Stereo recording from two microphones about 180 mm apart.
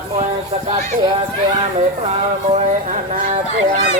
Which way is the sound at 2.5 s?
40° right (ahead or behind).